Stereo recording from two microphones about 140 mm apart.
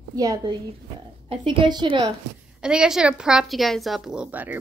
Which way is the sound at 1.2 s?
35° right (ahead or behind).